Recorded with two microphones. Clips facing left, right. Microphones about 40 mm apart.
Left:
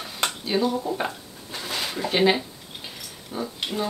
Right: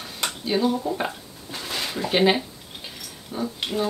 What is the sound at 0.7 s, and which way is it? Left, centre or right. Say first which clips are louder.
Speech: even; centre.